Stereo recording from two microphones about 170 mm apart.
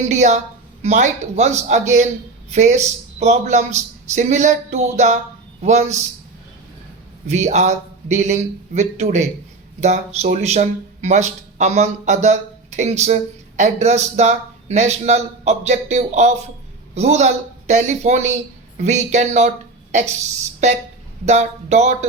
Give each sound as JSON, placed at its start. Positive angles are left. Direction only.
{"t": 0.0, "sound": "speech", "side_deg": -45}
{"t": 7.3, "sound": "a man's voice", "side_deg": -45}